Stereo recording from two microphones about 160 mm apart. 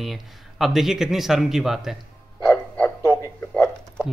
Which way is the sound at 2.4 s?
20° left (ahead or behind).